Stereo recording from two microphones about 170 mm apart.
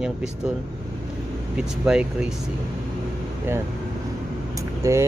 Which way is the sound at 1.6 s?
5° right (ahead or behind).